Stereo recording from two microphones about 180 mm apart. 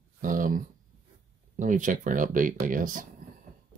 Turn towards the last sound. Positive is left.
turn(degrees=-50)  # may be behind; listen again after turning